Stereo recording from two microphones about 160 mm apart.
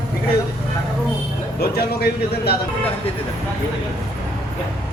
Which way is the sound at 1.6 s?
80° left.